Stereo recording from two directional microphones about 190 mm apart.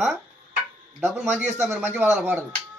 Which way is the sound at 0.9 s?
10° right (ahead or behind).